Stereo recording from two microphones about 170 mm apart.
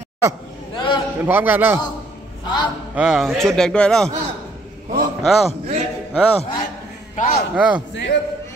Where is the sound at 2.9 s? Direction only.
5° right (ahead or behind).